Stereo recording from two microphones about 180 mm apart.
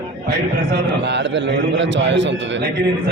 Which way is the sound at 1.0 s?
75° right (ahead or behind).